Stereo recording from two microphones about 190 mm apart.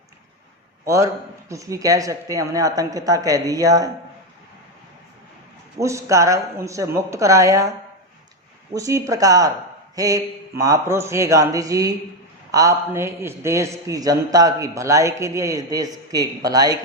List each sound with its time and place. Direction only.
0.9 s speech: 15° right (ahead or behind)
5.8 s a man's voice: 15° right (ahead or behind)
8.7 s a man's voice: 15° right (ahead or behind)